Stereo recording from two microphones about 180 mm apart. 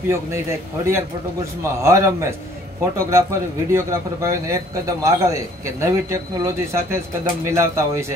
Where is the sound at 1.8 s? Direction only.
15° right (ahead or behind).